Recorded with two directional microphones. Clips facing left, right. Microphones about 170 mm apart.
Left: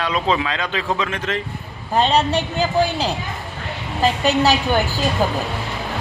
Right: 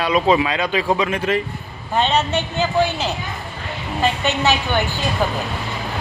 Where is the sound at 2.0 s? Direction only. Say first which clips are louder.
Left 2 dB; 35° left (ahead or behind).